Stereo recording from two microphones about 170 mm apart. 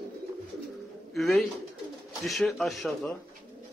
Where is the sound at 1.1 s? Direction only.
Centre (ahead or behind).